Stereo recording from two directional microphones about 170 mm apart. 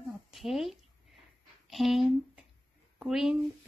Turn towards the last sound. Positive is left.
turn(degrees=-5)  # may be behind; listen again after turning